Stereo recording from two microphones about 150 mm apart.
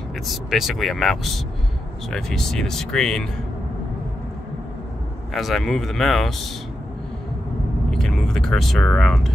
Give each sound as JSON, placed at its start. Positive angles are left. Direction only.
{"t": 0.3, "sound": "speech", "side_deg": 0}
{"t": 5.3, "sound": "speech", "side_deg": 0}
{"t": 7.9, "sound": "speech", "side_deg": 5}